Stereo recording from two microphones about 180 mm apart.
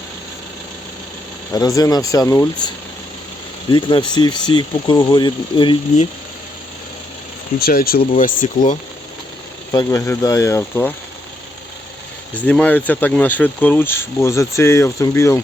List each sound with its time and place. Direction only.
1.5 s speech: 20° left (ahead or behind)
7.6 s speech: 55° left (ahead or behind)
9.7 s speech: 20° left (ahead or behind)
12.3 s speech: 10° left (ahead or behind)